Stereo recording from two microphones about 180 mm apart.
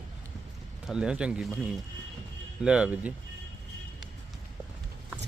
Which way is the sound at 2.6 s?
5° right (ahead or behind).